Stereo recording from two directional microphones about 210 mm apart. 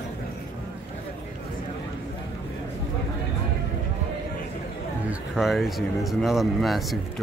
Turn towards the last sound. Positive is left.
turn(degrees=0)  # may be behind; listen again after turning